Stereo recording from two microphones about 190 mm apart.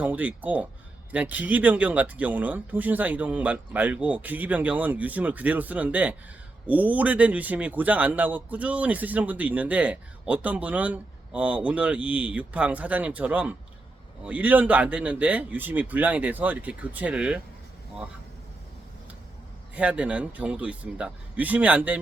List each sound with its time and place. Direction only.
0.0 s speech: 10° right (ahead or behind)
19.7 s speech: 5° right (ahead or behind)